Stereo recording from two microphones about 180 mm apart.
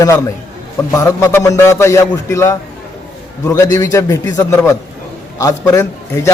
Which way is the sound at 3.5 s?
15° left (ahead or behind).